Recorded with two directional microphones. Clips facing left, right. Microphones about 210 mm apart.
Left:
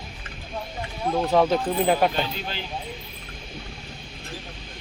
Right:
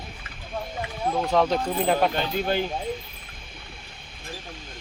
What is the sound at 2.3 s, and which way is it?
Speech, 50° right (ahead or behind).